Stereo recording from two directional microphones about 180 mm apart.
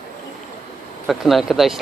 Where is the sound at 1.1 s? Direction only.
Centre (ahead or behind).